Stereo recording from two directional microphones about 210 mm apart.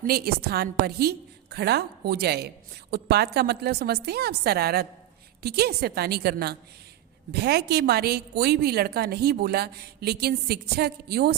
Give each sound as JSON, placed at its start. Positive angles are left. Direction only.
{"t": 0.0, "sound": "a woman's voice", "side_deg": -45}